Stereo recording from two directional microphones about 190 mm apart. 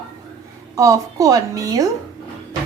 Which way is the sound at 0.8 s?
20° right (ahead or behind).